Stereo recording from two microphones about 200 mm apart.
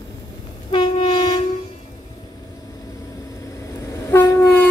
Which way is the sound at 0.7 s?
25° left (ahead or behind).